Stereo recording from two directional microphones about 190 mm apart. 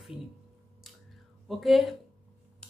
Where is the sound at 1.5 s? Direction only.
Centre (ahead or behind).